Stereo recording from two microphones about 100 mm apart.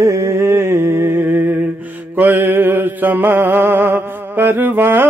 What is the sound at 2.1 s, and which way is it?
Mantra, 20° right (ahead or behind).